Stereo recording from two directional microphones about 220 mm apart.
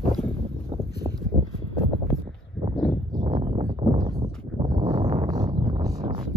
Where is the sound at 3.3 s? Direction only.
30° right (ahead or behind).